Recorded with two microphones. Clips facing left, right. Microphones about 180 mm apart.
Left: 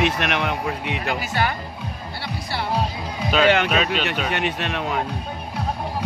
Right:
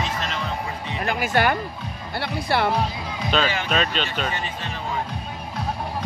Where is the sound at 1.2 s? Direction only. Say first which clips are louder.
Right 4 dB; 55° right (ahead or behind).